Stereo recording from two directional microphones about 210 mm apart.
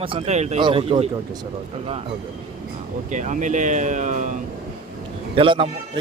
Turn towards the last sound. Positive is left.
turn(degrees=-25)  # may be behind; listen again after turning